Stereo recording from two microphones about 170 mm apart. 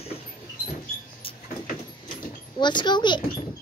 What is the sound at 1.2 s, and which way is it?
Vehicle, 30° left (ahead or behind).